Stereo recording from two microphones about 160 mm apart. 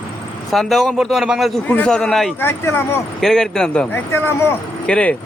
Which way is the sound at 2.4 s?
15° left (ahead or behind).